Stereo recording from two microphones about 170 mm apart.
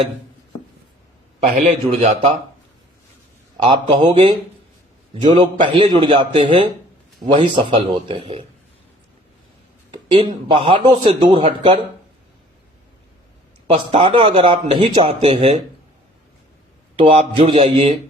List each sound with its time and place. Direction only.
1.5 s speech: 40° right (ahead or behind)
3.6 s a man's voice: 35° right (ahead or behind)
9.9 s a sound: 30° right (ahead or behind)
10.5 s a man's voice: 30° right (ahead or behind)
13.7 s speech: 30° right (ahead or behind)
17.0 s speech: 35° right (ahead or behind)